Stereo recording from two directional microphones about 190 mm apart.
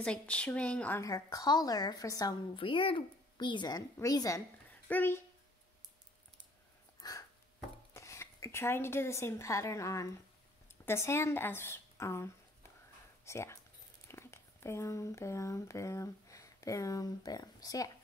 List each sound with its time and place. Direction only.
0.0 s speech: 5° left (ahead or behind)
7.0 s a sound: 20° left (ahead or behind)
7.9 s speech: 15° left (ahead or behind)